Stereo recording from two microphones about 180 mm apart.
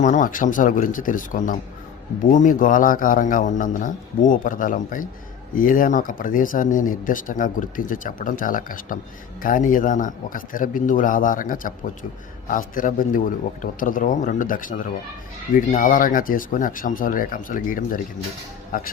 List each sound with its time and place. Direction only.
0.0 s speech: 45° left (ahead or behind)